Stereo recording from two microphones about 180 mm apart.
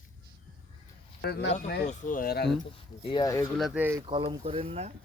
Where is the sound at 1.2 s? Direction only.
70° left (ahead or behind).